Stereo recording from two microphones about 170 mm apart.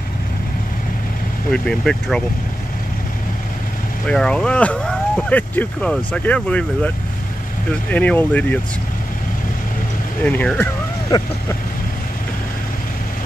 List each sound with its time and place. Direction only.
1.5 s speech: 5° left (ahead or behind)
4.1 s speech: 5° left (ahead or behind)
7.9 s speech: 10° left (ahead or behind)
10.2 s speech: 10° left (ahead or behind)
11.1 s vehicle: 20° left (ahead or behind)